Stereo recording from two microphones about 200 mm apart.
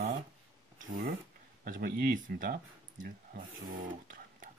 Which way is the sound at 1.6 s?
45° right (ahead or behind).